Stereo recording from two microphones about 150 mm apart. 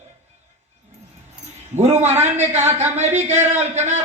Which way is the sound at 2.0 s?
45° right (ahead or behind).